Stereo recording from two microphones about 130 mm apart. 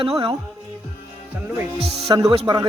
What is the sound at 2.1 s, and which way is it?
Speech, 30° right (ahead or behind).